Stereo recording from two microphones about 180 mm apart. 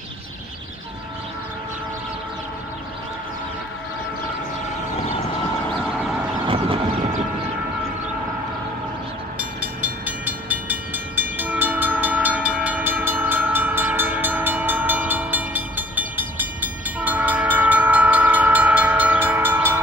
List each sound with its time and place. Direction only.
4.9 s vehicle: 35° left (ahead or behind)
6.4 s a sound: 30° right (ahead or behind)
9.4 s train: 10° right (ahead or behind)